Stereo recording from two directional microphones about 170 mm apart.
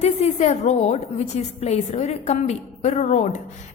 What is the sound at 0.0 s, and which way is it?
A woman's voice, 40° left (ahead or behind).